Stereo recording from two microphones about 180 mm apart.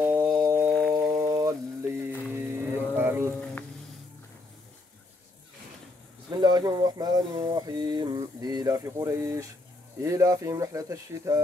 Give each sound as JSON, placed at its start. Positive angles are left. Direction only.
{"t": 0.0, "sound": "music", "side_deg": -15}
{"t": 0.7, "sound": "a sound", "side_deg": 0}
{"t": 1.1, "sound": "mantra", "side_deg": -20}
{"t": 2.2, "sound": "cattle", "side_deg": -15}
{"t": 6.3, "sound": "speech", "side_deg": -20}